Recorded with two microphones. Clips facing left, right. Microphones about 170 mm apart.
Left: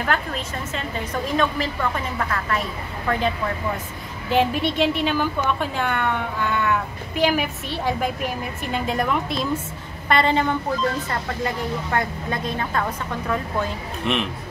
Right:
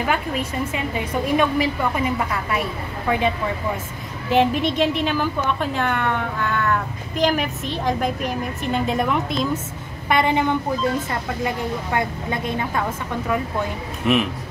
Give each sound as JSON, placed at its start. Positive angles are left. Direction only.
{"t": 0.0, "sound": "a woman's voice", "side_deg": -5}
{"t": 4.3, "sound": "speech", "side_deg": 0}
{"t": 10.0, "sound": "a woman's voice", "side_deg": -15}
{"t": 14.0, "sound": "speech", "side_deg": -5}